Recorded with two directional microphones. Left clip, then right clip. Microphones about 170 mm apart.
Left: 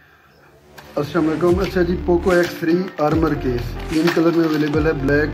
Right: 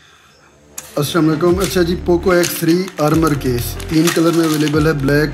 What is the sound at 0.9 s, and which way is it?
Speech, 35° right (ahead or behind).